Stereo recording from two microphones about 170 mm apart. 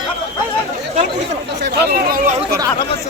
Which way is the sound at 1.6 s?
65° right (ahead or behind).